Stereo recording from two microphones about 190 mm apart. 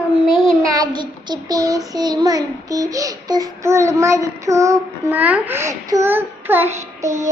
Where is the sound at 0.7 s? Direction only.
20° right (ahead or behind).